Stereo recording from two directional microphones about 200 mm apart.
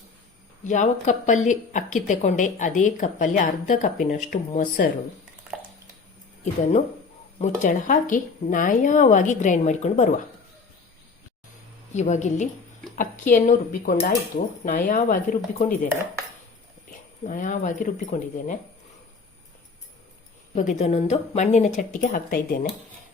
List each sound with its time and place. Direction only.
0.6 s a woman's voice: 40° left (ahead or behind)
6.4 s a woman's voice: 35° left (ahead or behind)
11.9 s a woman's voice: 35° left (ahead or behind)
17.2 s a woman's voice: 40° left (ahead or behind)
20.6 s a woman's voice: 35° left (ahead or behind)